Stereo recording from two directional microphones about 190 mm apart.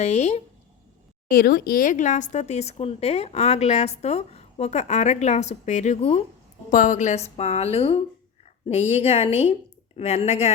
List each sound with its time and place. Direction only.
0.0 s speech: 35° left (ahead or behind)
1.3 s a woman's voice: 50° left (ahead or behind); by 10.5 s 30° left (ahead or behind)